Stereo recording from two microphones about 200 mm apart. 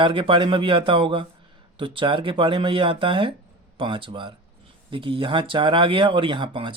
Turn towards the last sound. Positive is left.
turn(degrees=-25)  # may be behind; listen again after turning